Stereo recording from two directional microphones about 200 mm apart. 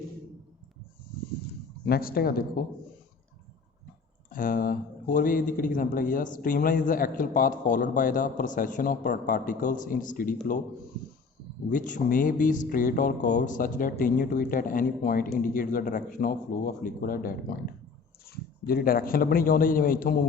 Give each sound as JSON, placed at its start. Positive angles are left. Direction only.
{"t": 1.8, "sound": "a man's voice", "side_deg": 50}
{"t": 4.3, "sound": "a man's voice", "side_deg": 45}
{"t": 11.7, "sound": "a man's voice", "side_deg": 40}